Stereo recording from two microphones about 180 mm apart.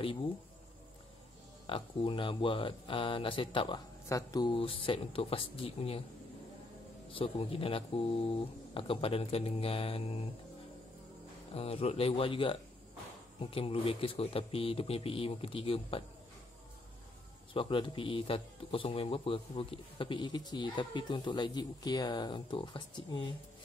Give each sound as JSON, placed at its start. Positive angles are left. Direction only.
{"t": 1.7, "sound": "speech", "side_deg": 30}
{"t": 7.1, "sound": "speech", "side_deg": 30}
{"t": 11.5, "sound": "speech", "side_deg": 30}
{"t": 17.6, "sound": "speech", "side_deg": 30}